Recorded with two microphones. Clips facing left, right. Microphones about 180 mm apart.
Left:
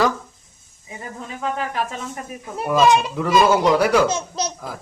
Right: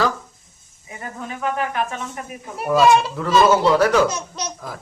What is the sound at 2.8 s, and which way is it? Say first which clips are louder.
Speech: right 1 dB; 15° left (ahead or behind).